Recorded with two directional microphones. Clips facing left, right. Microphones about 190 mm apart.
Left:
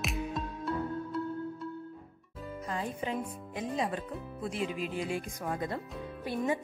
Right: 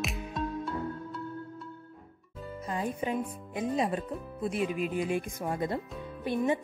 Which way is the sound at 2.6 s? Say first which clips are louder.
Right 3 dB; 20° right (ahead or behind).